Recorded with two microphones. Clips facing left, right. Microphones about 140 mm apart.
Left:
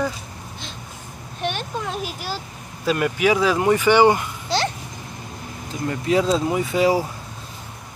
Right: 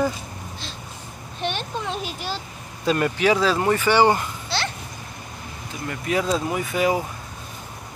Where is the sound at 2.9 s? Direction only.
10° left (ahead or behind).